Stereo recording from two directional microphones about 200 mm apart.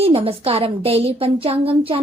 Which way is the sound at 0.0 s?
30° right (ahead or behind).